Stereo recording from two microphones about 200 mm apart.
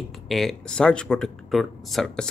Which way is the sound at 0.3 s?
Centre (ahead or behind).